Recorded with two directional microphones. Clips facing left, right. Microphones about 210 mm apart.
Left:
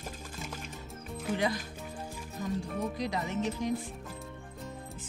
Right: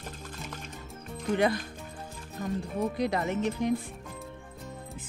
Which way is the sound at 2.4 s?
60° right (ahead or behind).